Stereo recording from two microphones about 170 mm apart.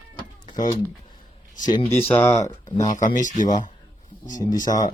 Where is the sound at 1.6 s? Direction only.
25° left (ahead or behind).